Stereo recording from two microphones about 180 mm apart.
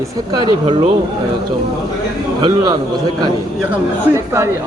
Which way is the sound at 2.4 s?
25° right (ahead or behind).